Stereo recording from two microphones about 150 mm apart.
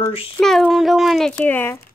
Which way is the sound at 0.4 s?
Centre (ahead or behind).